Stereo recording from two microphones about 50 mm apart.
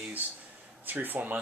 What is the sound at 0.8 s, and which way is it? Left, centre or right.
Speech, right.